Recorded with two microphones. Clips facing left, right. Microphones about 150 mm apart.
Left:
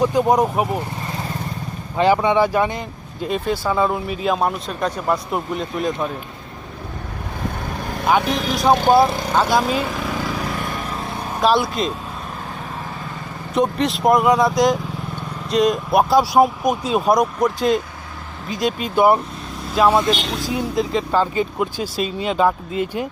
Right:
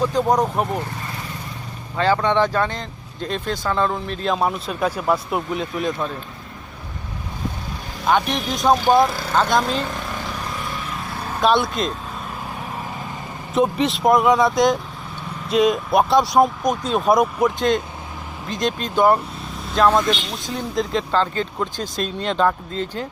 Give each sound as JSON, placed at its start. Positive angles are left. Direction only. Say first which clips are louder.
{"t": 0.0, "sound": "speech", "louder": "left 2 dB", "side_deg": 10}
{"t": 2.0, "sound": "speech", "louder": "left 2 dB", "side_deg": 15}
{"t": 8.2, "sound": "speech", "louder": "left 3 dB", "side_deg": 90}
{"t": 9.3, "sound": "speech", "louder": "left 1 dB", "side_deg": 5}
{"t": 11.3, "sound": "speech", "louder": "left 1 dB", "side_deg": 0}
{"t": 13.5, "sound": "speech", "louder": "even", "side_deg": 0}